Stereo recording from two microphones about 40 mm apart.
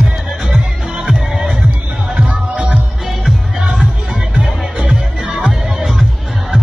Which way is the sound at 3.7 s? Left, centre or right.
Centre.